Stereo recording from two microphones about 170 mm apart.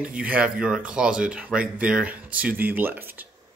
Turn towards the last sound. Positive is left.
turn(degrees=-10)  # may be behind; listen again after turning